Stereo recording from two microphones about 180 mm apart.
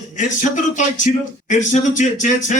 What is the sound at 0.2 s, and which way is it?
Speech, 45° left (ahead or behind).